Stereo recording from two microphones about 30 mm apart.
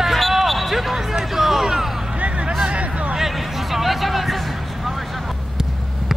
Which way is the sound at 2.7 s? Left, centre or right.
Right.